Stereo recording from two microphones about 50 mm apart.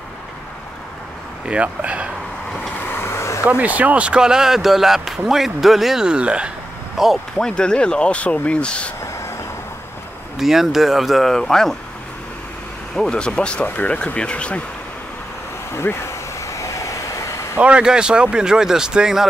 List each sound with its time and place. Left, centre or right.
1.5 s speech: right
2.9 s a sound: left
3.4 s speech: right; by 6.0 s centre
6.0 s speech: right
7.0 s speech: centre
7.3 s speech: centre
10.3 s speech: centre
12.9 s speech: centre
15.7 s vehicle: left
17.6 s speech: right